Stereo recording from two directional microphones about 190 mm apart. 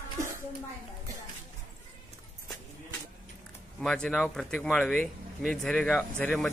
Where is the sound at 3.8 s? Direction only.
5° left (ahead or behind).